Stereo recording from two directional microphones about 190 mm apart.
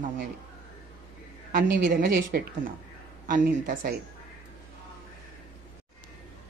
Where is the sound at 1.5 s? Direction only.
50° right (ahead or behind).